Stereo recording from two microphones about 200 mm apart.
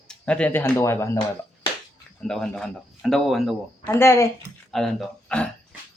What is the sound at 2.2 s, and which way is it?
Speech, 5° left (ahead or behind).